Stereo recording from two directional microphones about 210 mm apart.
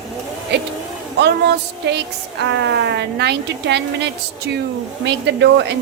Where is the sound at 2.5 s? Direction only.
55° right (ahead or behind).